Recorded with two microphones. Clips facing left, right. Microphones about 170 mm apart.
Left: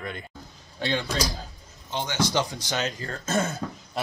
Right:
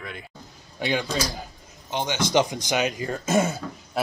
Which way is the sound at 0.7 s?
15° right (ahead or behind).